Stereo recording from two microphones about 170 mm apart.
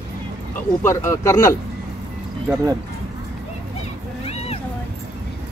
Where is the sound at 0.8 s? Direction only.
15° left (ahead or behind).